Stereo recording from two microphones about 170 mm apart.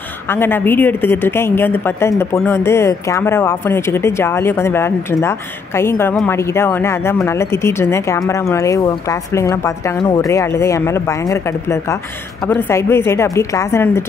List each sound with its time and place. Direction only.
0.3 s speech: 10° left (ahead or behind)